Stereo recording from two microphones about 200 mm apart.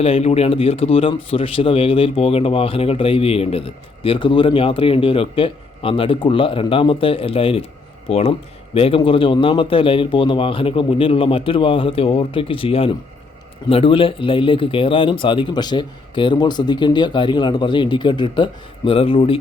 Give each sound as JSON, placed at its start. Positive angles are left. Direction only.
{"t": 0.0, "sound": "speech", "side_deg": 30}